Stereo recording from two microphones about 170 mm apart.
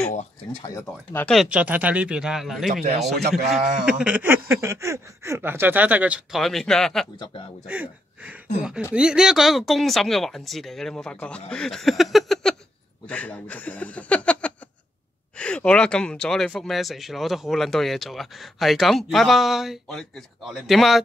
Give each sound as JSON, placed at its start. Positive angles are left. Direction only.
{"t": 0.6, "sound": "speech", "side_deg": 20}
{"t": 1.2, "sound": "speech", "side_deg": 0}
{"t": 3.2, "sound": "a man's voice", "side_deg": -70}
{"t": 3.8, "sound": "speech", "side_deg": -5}
{"t": 7.6, "sound": "speech", "side_deg": -10}